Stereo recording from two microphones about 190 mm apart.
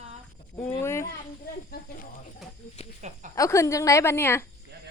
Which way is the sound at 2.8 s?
35° left (ahead or behind).